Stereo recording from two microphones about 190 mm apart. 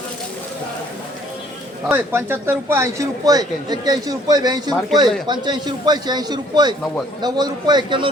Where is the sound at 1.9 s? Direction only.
10° right (ahead or behind).